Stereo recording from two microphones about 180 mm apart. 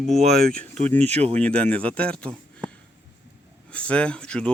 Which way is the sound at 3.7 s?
5° left (ahead or behind).